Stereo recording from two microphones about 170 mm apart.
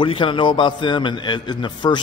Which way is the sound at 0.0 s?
30° left (ahead or behind).